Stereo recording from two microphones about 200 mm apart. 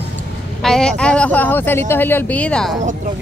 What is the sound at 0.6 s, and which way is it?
Speech, 5° left (ahead or behind).